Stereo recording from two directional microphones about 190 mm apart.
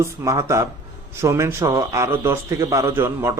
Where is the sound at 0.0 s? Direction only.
15° right (ahead or behind).